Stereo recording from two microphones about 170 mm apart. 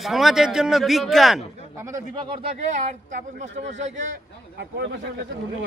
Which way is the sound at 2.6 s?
45° right (ahead or behind).